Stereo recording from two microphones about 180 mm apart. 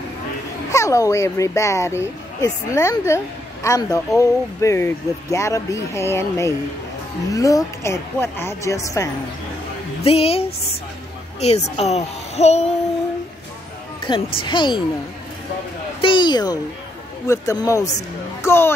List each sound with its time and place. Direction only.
0.7 s a woman's voice: 15° left (ahead or behind)
10.0 s a child's voice: 35° left (ahead or behind)
14.0 s a woman's voice: 25° left (ahead or behind)
16.0 s a woman's voice: 25° left (ahead or behind)